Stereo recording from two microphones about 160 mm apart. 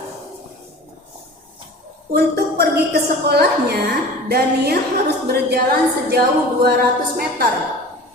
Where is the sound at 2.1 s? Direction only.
85° right.